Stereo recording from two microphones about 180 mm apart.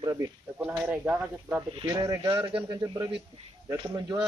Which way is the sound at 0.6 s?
5° right (ahead or behind).